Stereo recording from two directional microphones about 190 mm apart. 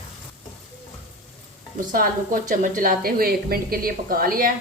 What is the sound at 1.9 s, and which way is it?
Speech, 45° right (ahead or behind).